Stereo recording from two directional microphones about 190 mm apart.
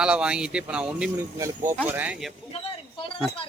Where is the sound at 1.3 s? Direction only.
15° right (ahead or behind).